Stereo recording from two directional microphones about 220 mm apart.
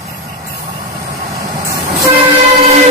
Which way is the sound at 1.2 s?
15° right (ahead or behind).